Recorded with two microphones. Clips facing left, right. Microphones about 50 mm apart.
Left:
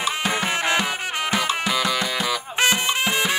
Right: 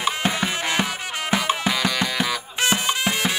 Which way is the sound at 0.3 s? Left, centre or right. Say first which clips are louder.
Left 2 dB; left.